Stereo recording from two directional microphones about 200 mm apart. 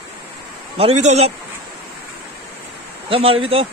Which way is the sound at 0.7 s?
30° right (ahead or behind).